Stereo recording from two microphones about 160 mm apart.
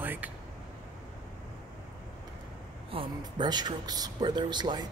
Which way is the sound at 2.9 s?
25° right (ahead or behind).